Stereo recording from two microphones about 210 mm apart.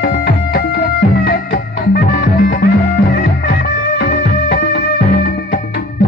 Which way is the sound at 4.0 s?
50° left (ahead or behind).